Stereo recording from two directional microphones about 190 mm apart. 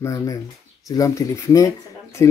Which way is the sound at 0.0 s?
15° left (ahead or behind).